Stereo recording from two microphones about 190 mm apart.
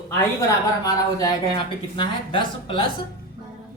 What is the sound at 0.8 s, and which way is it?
Speech, 20° left (ahead or behind).